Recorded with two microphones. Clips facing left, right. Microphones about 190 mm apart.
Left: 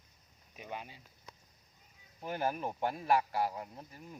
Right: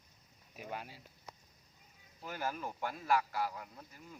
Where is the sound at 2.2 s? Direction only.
25° left (ahead or behind).